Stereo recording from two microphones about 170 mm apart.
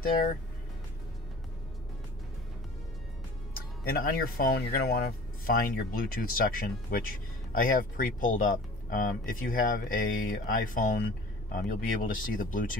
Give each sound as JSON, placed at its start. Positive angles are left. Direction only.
{"t": 3.5, "sound": "speech", "side_deg": 60}